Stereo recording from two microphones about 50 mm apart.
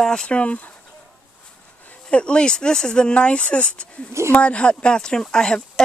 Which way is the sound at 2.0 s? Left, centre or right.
Left.